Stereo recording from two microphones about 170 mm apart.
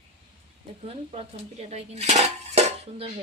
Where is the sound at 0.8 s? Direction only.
35° right (ahead or behind).